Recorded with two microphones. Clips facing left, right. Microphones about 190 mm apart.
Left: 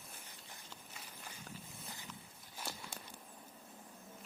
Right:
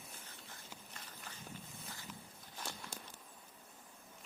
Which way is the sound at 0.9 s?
10° left (ahead or behind).